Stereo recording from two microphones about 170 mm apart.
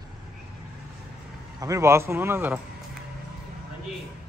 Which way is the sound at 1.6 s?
20° right (ahead or behind).